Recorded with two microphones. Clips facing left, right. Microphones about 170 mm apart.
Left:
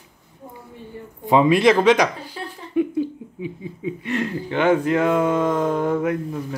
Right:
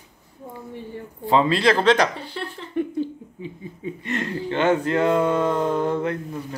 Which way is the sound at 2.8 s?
10° left (ahead or behind).